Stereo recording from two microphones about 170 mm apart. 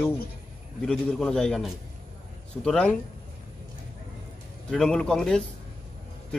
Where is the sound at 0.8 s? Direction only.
Centre (ahead or behind).